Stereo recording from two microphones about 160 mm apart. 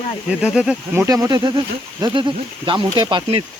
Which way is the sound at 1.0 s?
20° right (ahead or behind).